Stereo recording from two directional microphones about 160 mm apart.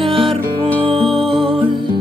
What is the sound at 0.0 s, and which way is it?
Music, 35° right (ahead or behind).